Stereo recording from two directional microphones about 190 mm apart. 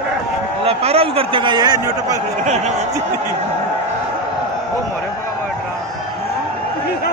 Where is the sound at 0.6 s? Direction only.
30° right (ahead or behind).